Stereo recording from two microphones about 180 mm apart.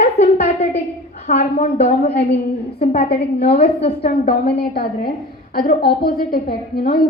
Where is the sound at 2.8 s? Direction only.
60° left (ahead or behind).